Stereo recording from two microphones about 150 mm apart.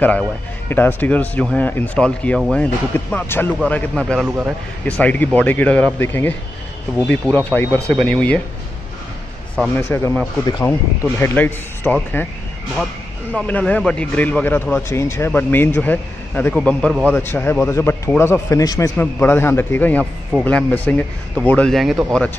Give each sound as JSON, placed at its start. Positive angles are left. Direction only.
{"t": 0.7, "sound": "speech", "side_deg": 15}
{"t": 9.8, "sound": "speech", "side_deg": 15}
{"t": 13.3, "sound": "speech", "side_deg": 10}